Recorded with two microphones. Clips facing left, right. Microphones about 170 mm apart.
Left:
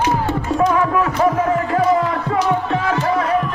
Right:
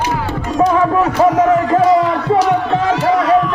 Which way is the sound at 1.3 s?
85° right.